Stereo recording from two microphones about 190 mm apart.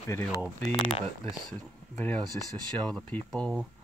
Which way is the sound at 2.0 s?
5° left (ahead or behind).